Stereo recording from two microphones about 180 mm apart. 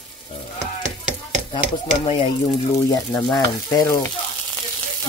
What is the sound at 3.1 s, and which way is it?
Speech, 20° left (ahead or behind).